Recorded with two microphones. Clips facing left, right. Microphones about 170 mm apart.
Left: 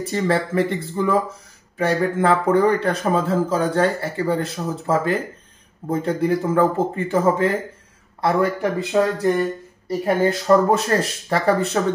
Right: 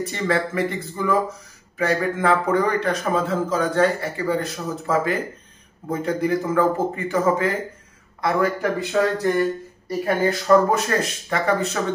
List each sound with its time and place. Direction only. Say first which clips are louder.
0.0 s speech: left 2 dB; 30° left (ahead or behind)